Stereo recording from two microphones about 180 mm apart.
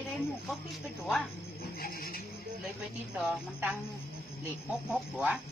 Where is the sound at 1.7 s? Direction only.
55° left (ahead or behind).